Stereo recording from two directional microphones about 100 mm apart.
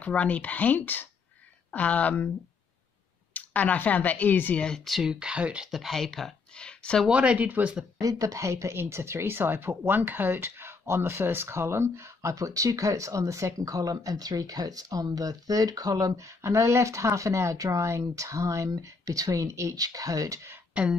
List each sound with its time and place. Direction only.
0.0 s speech: 15° left (ahead or behind)
3.3 s speech: 15° left (ahead or behind)
7.1 s speech: 10° right (ahead or behind)
8.0 s speech: 35° right (ahead or behind)
20.7 s speech: 15° right (ahead or behind)